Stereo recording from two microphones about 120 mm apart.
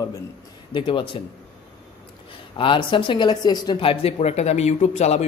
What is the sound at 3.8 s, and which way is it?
Speech, 50° left (ahead or behind).